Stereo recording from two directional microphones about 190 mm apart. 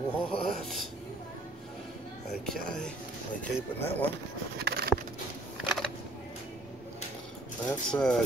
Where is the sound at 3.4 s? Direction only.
10° left (ahead or behind).